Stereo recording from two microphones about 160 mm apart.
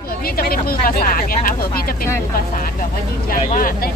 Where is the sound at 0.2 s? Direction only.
65° left (ahead or behind).